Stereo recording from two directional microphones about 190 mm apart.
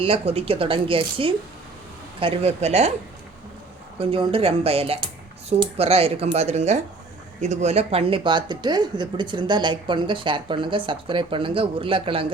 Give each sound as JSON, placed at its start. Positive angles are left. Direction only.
{"t": 0.0, "sound": "speech", "side_deg": -30}
{"t": 3.9, "sound": "speech", "side_deg": -30}